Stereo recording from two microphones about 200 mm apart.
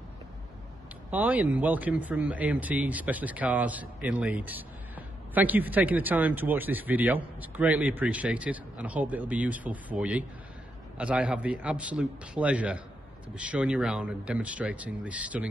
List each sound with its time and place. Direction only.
1.1 s speech: 10° right (ahead or behind)